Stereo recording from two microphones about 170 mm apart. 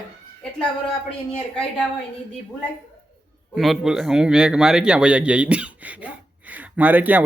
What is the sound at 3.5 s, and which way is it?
A man's voice, centre (ahead or behind).